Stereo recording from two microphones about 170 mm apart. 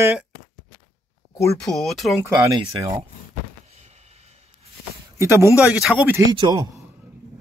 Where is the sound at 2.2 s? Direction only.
15° right (ahead or behind).